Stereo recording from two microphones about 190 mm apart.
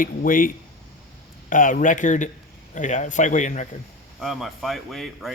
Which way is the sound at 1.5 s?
45° left (ahead or behind).